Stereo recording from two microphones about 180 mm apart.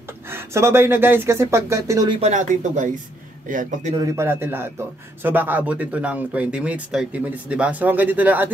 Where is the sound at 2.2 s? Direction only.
45° right (ahead or behind).